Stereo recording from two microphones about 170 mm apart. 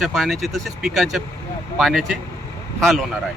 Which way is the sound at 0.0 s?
Centre (ahead or behind).